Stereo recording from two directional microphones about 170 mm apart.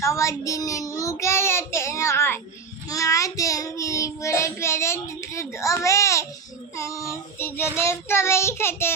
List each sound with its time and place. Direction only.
0.0 s child singing: 15° left (ahead or behind)